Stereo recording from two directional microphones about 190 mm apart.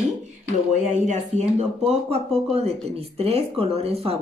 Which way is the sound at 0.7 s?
40° right (ahead or behind).